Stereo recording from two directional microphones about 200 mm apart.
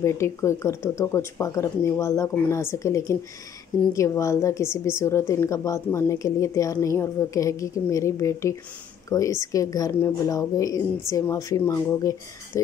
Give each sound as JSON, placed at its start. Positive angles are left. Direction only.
{"t": 0.0, "sound": "a woman's voice", "side_deg": 15}